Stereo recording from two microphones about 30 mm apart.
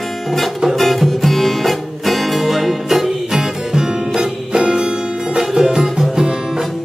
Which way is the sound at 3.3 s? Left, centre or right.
Centre.